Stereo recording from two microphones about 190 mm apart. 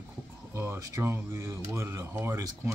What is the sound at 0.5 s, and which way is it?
Speech, 15° right (ahead or behind).